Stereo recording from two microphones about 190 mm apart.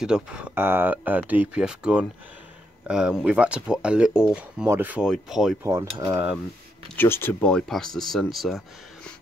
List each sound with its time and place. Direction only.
0.0 s speech: 5° right (ahead or behind)
5.6 s cutlery: 20° right (ahead or behind)
7.0 s speech: 10° left (ahead or behind)